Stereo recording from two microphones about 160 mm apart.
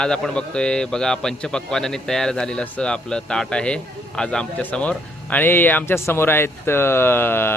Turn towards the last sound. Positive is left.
turn(degrees=15)  # may be behind; listen again after turning